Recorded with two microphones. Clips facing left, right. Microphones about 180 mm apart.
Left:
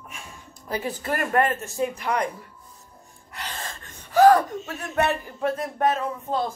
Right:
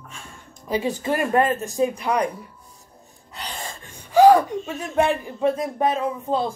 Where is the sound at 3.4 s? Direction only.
15° right (ahead or behind).